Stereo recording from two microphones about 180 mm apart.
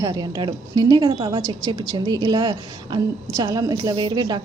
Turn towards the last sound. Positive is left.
turn(degrees=-20)  # may be behind; listen again after turning